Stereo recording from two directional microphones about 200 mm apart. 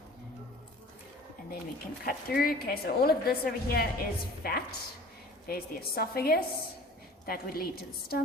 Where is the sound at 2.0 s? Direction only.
45° left (ahead or behind).